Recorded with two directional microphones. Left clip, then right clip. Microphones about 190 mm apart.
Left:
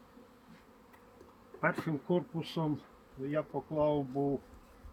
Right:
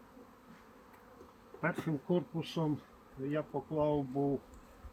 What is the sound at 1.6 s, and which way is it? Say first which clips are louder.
Speech: left 3 dB; 20° left (ahead or behind).